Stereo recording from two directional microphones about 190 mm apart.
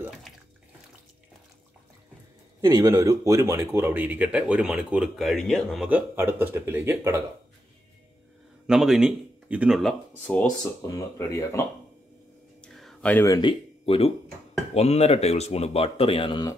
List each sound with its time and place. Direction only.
0.3 s bathtub: centre (ahead or behind)
2.6 s speech: 20° right (ahead or behind)
8.6 s speech: 5° right (ahead or behind); by 11.6 s 15° left (ahead or behind)
12.6 s a sound: 5° left (ahead or behind); by 14.1 s 30° left (ahead or behind)
14.7 s speech: 35° left (ahead or behind)